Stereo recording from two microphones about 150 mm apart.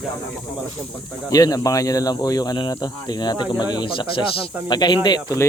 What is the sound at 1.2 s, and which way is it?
Speech, 25° left (ahead or behind).